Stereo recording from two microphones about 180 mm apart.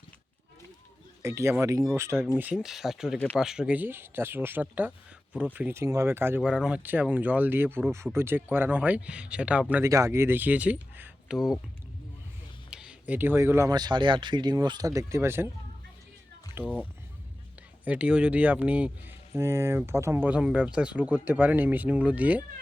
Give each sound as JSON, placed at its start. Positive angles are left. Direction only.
{"t": 1.2, "sound": "speech", "side_deg": -15}
{"t": 12.7, "sound": "speech", "side_deg": -5}
{"t": 16.6, "sound": "speech", "side_deg": 10}
{"t": 17.8, "sound": "speech", "side_deg": -5}